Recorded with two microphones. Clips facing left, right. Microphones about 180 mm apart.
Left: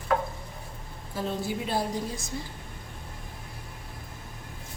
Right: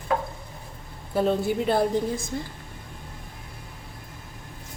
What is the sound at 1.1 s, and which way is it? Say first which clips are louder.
A woman's voice: right 8 dB; 55° right (ahead or behind).